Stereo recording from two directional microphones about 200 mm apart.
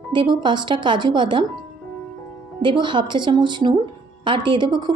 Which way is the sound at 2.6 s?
25° right (ahead or behind).